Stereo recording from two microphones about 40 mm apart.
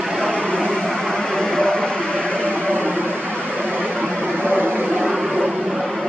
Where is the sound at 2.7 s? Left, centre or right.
Right.